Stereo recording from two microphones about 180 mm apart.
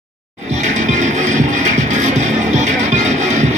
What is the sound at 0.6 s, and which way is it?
Music, 40° right (ahead or behind).